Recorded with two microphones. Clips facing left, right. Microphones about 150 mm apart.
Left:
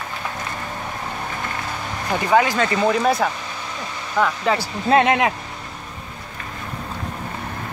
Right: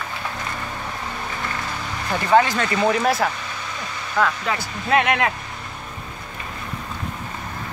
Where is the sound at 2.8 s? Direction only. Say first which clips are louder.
Even; 5° right (ahead or behind).